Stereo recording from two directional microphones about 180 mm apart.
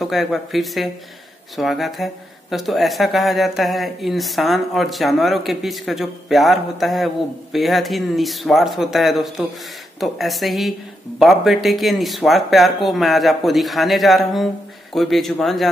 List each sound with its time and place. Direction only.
0.0 s speech: centre (ahead or behind)